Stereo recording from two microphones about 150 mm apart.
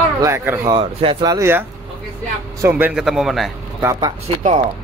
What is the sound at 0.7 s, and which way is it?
Speech, 35° right (ahead or behind).